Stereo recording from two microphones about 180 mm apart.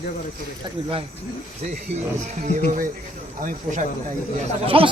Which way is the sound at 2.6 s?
40° right (ahead or behind).